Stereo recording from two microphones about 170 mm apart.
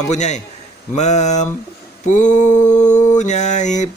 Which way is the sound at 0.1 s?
45° left (ahead or behind).